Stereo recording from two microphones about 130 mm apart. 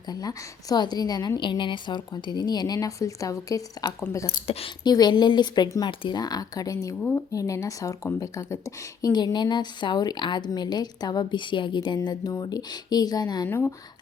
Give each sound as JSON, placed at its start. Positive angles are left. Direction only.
{"t": 0.1, "sound": "speech", "side_deg": 30}
{"t": 4.4, "sound": "speech", "side_deg": 45}
{"t": 4.9, "sound": "speech", "side_deg": 30}
{"t": 13.5, "sound": "speech", "side_deg": 20}